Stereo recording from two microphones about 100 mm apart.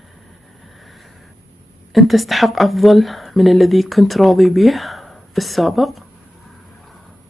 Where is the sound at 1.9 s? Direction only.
Centre (ahead or behind).